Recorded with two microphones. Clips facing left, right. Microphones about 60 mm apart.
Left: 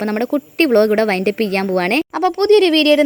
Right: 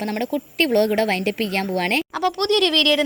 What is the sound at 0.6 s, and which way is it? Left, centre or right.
Speech, left.